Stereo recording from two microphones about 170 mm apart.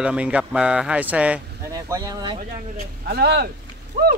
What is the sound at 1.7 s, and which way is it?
Speech, 20° right (ahead or behind).